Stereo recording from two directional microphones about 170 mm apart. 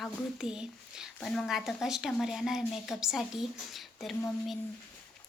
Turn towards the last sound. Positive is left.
turn(degrees=0)  # may be behind; listen again after turning